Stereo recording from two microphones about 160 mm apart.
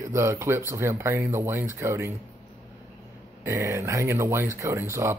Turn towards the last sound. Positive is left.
turn(degrees=-15)  # may be behind; listen again after turning